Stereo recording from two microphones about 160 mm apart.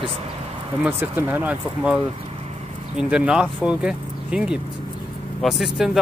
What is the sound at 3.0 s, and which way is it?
Speech, 5° right (ahead or behind).